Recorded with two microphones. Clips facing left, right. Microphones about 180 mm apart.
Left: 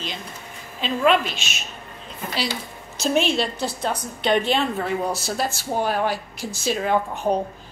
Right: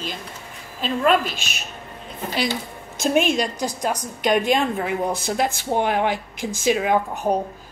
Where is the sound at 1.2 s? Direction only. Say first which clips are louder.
Right 1 dB; 55° right (ahead or behind).